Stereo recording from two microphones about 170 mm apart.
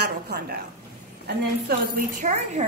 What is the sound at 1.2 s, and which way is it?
A woman's voice, 60° right (ahead or behind).